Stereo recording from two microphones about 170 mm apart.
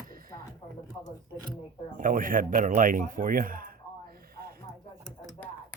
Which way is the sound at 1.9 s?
55° right (ahead or behind).